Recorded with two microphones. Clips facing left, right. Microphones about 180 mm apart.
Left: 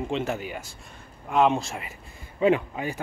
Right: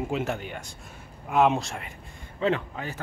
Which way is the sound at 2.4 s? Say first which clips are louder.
Left 4 dB; 10° left (ahead or behind).